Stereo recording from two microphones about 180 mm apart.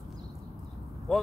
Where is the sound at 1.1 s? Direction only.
5° left (ahead or behind).